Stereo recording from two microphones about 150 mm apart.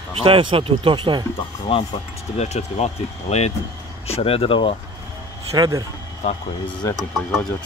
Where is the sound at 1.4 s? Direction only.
35° left (ahead or behind).